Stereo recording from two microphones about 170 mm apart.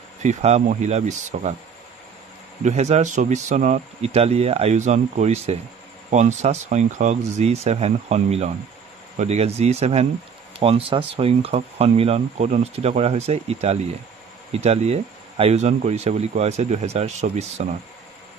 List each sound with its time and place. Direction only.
0.2 s speech: 40° right (ahead or behind)
2.6 s speech: 40° right (ahead or behind)